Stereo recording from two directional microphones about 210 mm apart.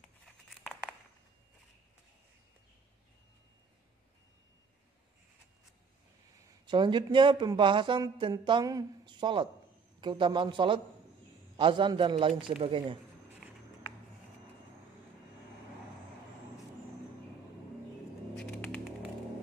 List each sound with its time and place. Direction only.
0.2 s crumpling: centre (ahead or behind)
6.4 s a man's voice: 20° right (ahead or behind)
18.3 s a sound: 5° left (ahead or behind)